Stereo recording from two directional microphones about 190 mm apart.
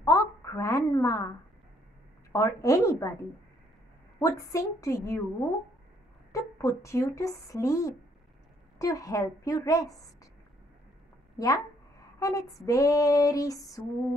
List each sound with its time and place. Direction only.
0.0 s a sound: 15° left (ahead or behind)
2.3 s female singing: 15° left (ahead or behind)
4.2 s female singing: 15° left (ahead or behind)
6.3 s female singing: 15° left (ahead or behind)
11.3 s speech: 15° left (ahead or behind)
12.2 s female singing: 15° left (ahead or behind)